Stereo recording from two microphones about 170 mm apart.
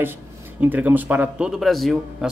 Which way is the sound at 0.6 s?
10° right (ahead or behind).